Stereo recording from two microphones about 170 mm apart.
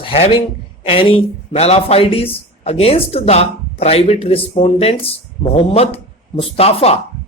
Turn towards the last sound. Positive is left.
turn(degrees=35)  # may be behind; listen again after turning